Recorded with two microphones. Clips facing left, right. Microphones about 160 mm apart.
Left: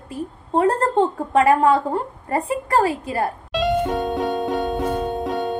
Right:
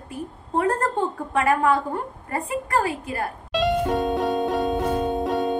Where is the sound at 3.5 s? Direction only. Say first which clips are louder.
Left 1 dB; centre (ahead or behind).